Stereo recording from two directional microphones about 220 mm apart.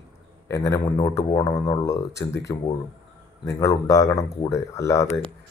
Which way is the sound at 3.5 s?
15° left (ahead or behind).